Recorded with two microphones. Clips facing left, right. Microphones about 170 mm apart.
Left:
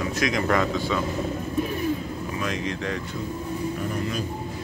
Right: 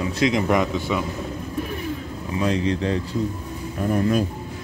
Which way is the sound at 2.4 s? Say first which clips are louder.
Right 8 dB; 30° right (ahead or behind).